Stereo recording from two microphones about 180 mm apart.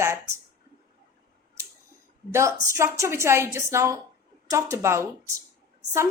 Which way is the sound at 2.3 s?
15° right (ahead or behind).